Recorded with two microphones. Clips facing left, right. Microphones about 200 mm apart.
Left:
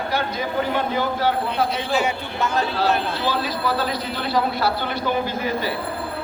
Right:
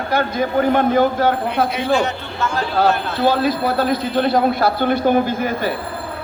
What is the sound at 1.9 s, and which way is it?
Speech, 10° left (ahead or behind).